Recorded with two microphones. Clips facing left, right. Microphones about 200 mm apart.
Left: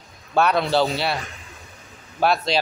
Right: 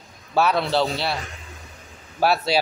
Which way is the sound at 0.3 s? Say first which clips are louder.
Left 1 dB; centre (ahead or behind).